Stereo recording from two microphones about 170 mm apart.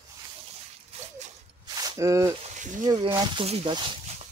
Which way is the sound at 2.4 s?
45° right (ahead or behind).